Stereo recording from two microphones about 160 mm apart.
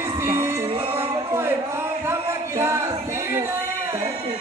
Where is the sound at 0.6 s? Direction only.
35° right (ahead or behind).